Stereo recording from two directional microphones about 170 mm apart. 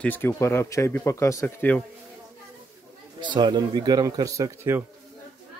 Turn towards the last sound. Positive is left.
turn(degrees=-15)  # may be behind; listen again after turning